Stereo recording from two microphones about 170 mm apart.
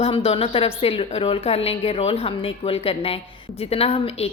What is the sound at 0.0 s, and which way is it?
A woman's voice, 35° left (ahead or behind).